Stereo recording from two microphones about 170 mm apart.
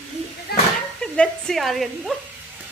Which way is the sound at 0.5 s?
65° left (ahead or behind).